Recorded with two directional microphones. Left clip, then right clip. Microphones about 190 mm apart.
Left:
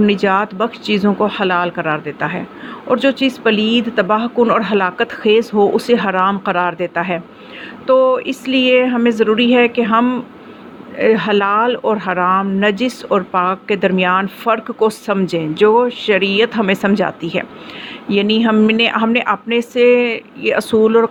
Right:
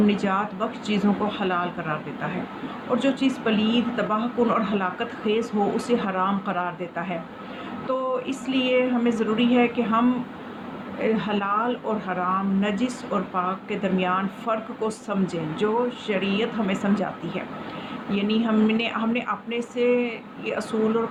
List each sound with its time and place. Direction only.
0.0 s speech: 40° left (ahead or behind)